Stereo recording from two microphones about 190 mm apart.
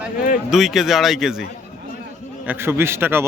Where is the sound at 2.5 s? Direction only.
10° right (ahead or behind).